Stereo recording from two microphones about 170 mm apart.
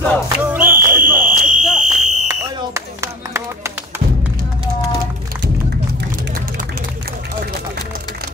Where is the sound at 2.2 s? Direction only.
15° right (ahead or behind).